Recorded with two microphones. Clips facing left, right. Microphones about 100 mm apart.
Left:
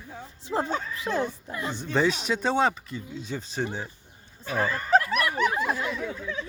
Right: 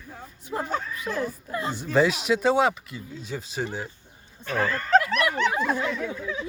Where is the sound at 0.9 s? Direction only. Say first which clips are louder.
Left 1 dB; 25° left (ahead or behind).